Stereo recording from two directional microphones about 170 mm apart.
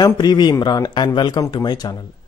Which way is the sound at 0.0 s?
25° left (ahead or behind).